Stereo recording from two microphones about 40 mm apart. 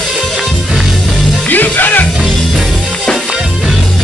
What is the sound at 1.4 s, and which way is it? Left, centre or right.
Music, left.